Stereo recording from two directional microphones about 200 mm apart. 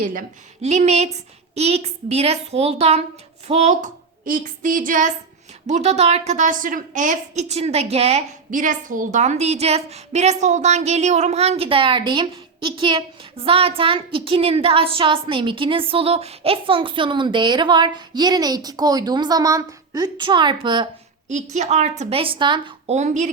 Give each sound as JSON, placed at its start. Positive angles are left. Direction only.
{"t": 0.0, "sound": "a woman's voice", "side_deg": -45}
{"t": 21.2, "sound": "a woman's voice", "side_deg": -35}